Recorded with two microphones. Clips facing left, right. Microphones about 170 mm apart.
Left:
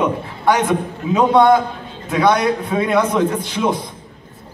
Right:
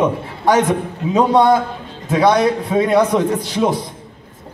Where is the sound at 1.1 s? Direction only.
35° right (ahead or behind).